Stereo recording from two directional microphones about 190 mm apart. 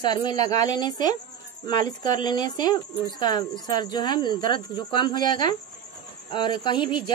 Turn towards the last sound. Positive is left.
turn(degrees=25)  # may be behind; listen again after turning